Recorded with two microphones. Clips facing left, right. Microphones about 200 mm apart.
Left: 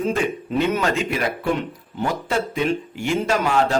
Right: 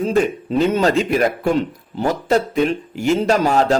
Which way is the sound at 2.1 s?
40° right (ahead or behind).